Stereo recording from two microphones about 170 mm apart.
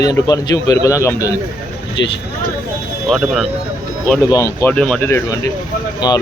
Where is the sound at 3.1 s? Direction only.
Centre (ahead or behind).